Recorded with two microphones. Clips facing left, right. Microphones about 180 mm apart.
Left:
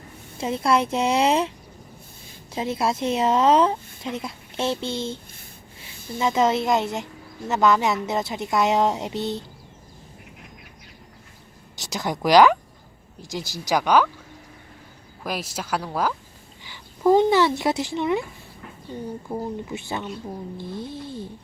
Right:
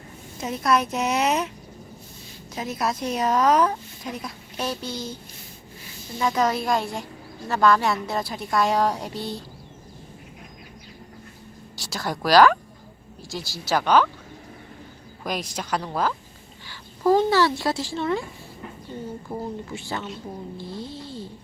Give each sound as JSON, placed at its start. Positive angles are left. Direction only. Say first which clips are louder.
{"t": 0.3, "sound": "a woman's voice", "louder": "left 1 dB", "side_deg": 25}
{"t": 2.6, "sound": "a woman's voice", "louder": "left 3 dB", "side_deg": 25}
{"t": 11.8, "sound": "a woman's voice", "louder": "left 2 dB", "side_deg": 20}
{"t": 15.2, "sound": "speech", "louder": "even", "side_deg": 5}
{"t": 20.6, "sound": "a sound", "louder": "left 2 dB", "side_deg": 55}